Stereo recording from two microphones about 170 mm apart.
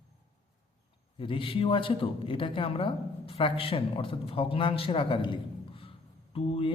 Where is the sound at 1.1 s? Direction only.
30° left (ahead or behind).